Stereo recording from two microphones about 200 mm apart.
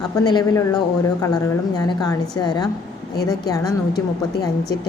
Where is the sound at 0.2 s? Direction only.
20° left (ahead or behind).